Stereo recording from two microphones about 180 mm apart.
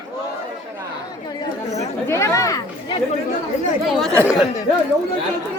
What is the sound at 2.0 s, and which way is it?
Chatter, 15° left (ahead or behind).